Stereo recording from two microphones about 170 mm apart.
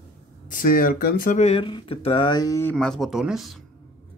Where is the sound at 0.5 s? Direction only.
55° left (ahead or behind).